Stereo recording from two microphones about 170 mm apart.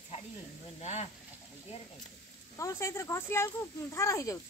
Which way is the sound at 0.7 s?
40° left (ahead or behind).